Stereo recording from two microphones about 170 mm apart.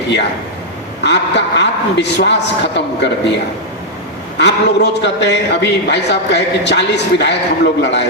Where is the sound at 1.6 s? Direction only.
90° left.